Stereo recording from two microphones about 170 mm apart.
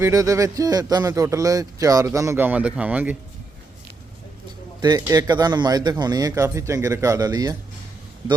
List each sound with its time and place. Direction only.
0.0 s speech: 20° right (ahead or behind)
4.8 s speech: 20° right (ahead or behind)